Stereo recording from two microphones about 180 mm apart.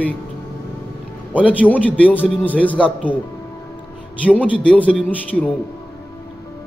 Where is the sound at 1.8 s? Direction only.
10° left (ahead or behind).